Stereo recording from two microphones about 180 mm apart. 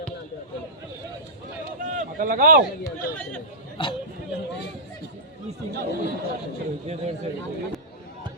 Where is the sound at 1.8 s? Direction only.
45° right (ahead or behind).